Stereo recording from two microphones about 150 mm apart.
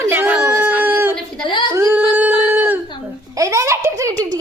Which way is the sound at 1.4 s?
35° left (ahead or behind).